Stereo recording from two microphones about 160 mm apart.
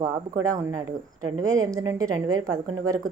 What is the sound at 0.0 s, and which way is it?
Speech, 20° right (ahead or behind).